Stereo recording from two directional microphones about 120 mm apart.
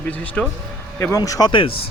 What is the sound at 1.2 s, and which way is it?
Speech, 30° left (ahead or behind).